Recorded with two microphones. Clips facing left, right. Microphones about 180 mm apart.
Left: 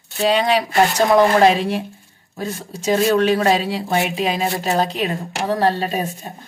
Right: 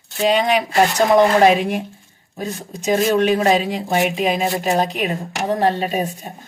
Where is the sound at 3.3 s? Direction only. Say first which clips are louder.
Right 1 dB; 20° right (ahead or behind).